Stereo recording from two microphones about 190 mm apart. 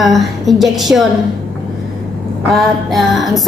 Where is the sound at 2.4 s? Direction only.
Centre (ahead or behind).